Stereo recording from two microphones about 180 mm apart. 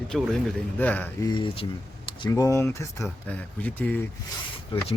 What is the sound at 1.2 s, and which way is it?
Speech, 25° left (ahead or behind).